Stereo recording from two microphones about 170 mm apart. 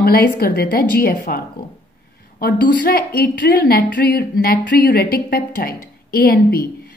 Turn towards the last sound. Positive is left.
turn(degrees=60)  # may be behind; listen again after turning